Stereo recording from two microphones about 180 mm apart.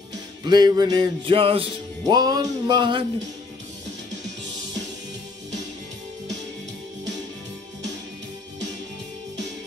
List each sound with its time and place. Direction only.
0.5 s music: 25° right (ahead or behind)